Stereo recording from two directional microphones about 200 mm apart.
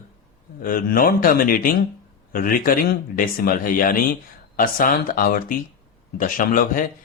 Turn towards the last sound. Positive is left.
turn(degrees=45)  # may be behind; listen again after turning